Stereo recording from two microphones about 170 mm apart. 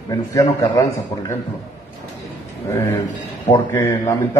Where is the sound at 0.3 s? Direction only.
20° left (ahead or behind).